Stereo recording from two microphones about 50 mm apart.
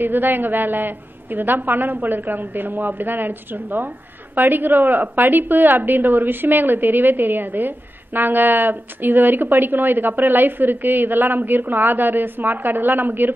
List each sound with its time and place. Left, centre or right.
0.0 s a woman's voice: right